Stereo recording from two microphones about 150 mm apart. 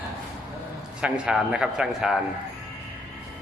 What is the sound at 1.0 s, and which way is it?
A man's voice, 5° right (ahead or behind).